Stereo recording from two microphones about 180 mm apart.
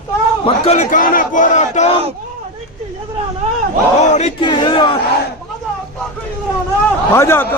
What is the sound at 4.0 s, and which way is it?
Battle cry, 40° left (ahead or behind).